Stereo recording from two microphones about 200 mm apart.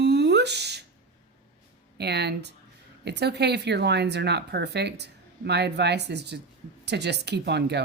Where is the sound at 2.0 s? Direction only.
55° right (ahead or behind).